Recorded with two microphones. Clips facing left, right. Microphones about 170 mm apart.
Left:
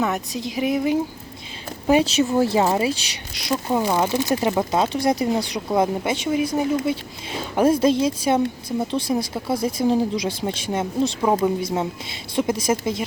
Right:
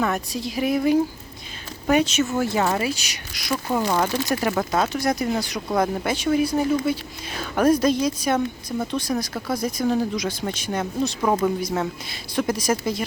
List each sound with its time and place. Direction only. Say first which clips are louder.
0.1 s a woman's voice: even; 20° left (ahead or behind)
1.9 s speech: left 2 dB; 30° left (ahead or behind)
3.7 s a woman's voice: left 1 dB; 15° left (ahead or behind)